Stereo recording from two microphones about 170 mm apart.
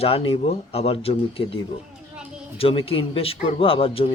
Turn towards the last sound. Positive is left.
turn(degrees=35)  # may be behind; listen again after turning